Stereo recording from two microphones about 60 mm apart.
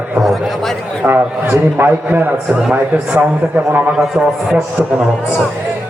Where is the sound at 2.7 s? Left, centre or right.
Right.